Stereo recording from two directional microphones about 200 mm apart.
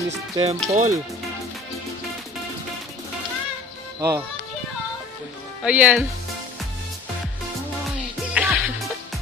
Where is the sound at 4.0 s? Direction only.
20° right (ahead or behind).